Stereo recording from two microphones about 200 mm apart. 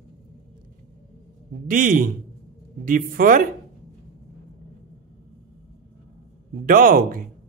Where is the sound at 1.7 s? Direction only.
45° right (ahead or behind).